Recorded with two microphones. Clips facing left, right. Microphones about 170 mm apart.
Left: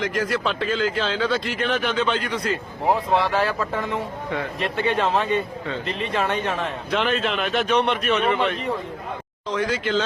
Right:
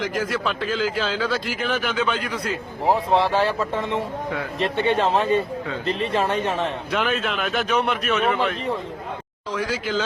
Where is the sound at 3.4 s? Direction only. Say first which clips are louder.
Right 1 dB; 25° right (ahead or behind).